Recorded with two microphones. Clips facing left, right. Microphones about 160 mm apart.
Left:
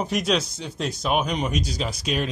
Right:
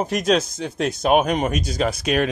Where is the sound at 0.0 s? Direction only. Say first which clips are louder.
Right 4 dB; 45° right (ahead or behind).